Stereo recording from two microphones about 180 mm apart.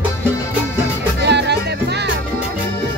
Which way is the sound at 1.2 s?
70° right (ahead or behind).